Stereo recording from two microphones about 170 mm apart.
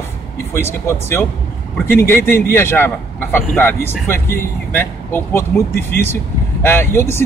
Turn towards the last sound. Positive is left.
turn(degrees=15)  # may be behind; listen again after turning